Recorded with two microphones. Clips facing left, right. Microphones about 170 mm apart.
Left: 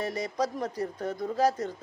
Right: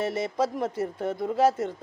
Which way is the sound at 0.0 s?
25° right (ahead or behind).